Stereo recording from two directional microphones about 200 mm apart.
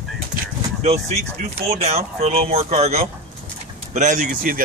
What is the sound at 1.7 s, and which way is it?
Speech, 30° right (ahead or behind).